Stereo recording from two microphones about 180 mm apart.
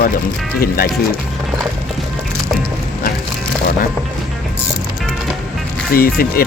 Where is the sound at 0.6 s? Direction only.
55° left (ahead or behind).